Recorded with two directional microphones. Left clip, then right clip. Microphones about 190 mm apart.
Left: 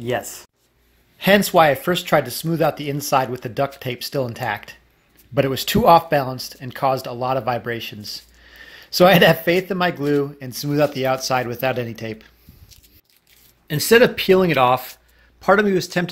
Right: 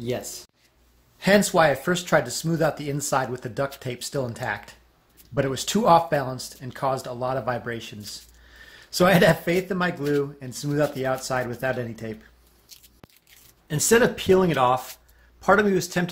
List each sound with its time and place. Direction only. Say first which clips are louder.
1.2 s speech: left 4 dB; 10° left (ahead or behind)
13.7 s speech: left 6 dB; 15° left (ahead or behind)